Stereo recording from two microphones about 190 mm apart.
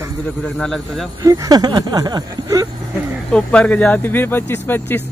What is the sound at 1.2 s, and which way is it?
Speech, 20° right (ahead or behind).